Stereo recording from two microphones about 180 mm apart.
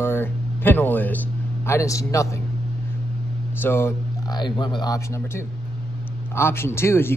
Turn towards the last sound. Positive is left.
turn(degrees=15)  # may be behind; listen again after turning